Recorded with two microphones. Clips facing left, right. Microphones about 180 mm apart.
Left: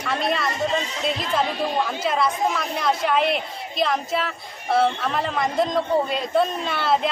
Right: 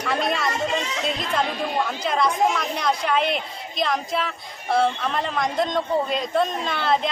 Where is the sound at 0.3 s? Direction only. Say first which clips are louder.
Even; centre (ahead or behind).